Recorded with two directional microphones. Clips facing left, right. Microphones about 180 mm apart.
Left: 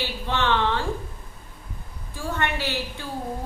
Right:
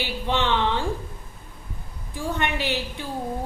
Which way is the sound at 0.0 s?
15° right (ahead or behind).